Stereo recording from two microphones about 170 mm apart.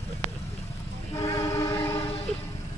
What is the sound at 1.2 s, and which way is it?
Train, 15° left (ahead or behind).